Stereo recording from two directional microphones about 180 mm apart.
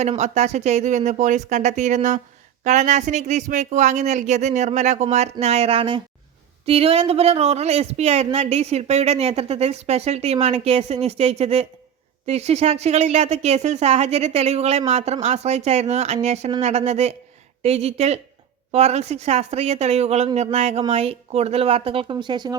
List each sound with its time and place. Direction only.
0.0 s speech: 40° right (ahead or behind); by 22.5 s 25° right (ahead or behind)